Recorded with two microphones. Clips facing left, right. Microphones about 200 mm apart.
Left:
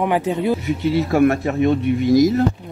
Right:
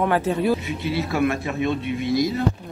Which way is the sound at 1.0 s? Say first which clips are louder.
Left 6 dB; 40° left (ahead or behind).